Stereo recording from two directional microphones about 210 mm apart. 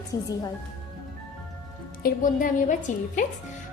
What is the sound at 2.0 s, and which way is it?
A woman's voice, 40° left (ahead or behind).